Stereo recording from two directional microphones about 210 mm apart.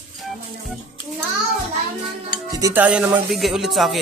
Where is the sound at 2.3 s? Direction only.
15° right (ahead or behind).